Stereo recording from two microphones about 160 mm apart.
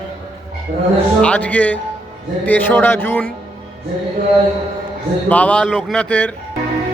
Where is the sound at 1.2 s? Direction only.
10° left (ahead or behind).